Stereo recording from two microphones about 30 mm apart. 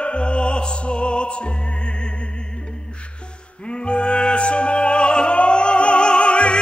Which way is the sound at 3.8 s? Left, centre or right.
Left.